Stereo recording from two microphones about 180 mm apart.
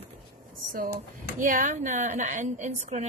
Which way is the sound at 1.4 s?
45° right (ahead or behind).